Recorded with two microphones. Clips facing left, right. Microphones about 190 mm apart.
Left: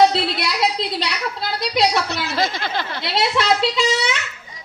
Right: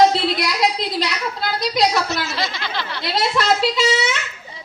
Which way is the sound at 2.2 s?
50° left (ahead or behind).